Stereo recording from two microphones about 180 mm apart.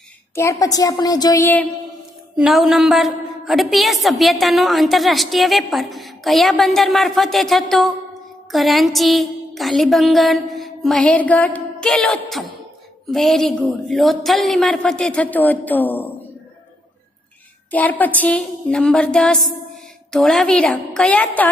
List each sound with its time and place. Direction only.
0.4 s a woman's voice: 15° left (ahead or behind)
2.3 s a woman's voice: centre (ahead or behind)
8.5 s music: centre (ahead or behind)
13.1 s a woman's voice: centre (ahead or behind)
17.6 s a woman's voice: 10° left (ahead or behind)